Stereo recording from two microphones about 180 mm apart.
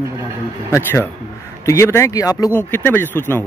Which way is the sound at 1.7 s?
15° left (ahead or behind).